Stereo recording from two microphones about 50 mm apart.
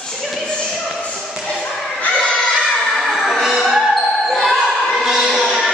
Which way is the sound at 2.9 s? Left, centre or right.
Centre.